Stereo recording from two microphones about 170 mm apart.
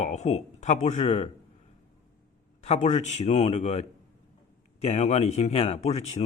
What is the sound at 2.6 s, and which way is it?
Speech, 40° left (ahead or behind).